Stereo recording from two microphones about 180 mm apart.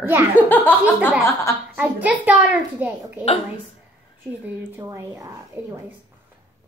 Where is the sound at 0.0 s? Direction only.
15° right (ahead or behind).